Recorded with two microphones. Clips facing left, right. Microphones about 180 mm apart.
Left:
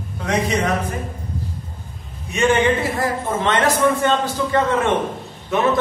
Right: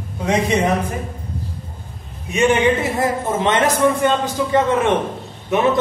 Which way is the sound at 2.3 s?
15° right (ahead or behind).